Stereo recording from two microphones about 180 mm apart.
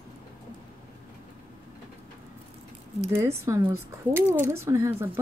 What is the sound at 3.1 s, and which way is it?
Speech, 15° right (ahead or behind).